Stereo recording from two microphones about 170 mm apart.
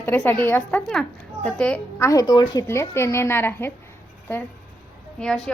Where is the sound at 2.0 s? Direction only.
20° left (ahead or behind).